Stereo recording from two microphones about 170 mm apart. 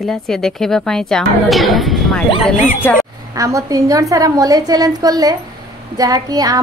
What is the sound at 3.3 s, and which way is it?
A woman's voice, 20° right (ahead or behind).